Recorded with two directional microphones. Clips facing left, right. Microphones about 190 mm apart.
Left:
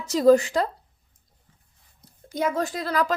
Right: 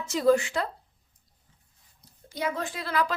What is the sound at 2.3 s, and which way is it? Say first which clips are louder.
Speech: left 6 dB; 45° left (ahead or behind).